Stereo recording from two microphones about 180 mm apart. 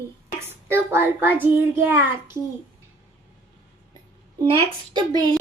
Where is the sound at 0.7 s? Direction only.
15° right (ahead or behind).